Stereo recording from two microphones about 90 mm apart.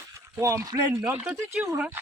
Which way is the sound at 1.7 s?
15° right (ahead or behind).